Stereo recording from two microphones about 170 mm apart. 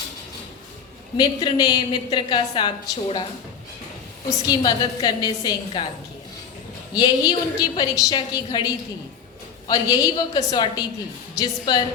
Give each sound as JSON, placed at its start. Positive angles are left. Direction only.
{"t": 1.1, "sound": "a woman's voice", "side_deg": 25}
{"t": 4.3, "sound": "a woman's voice", "side_deg": 25}
{"t": 6.9, "sound": "a woman's voice", "side_deg": 25}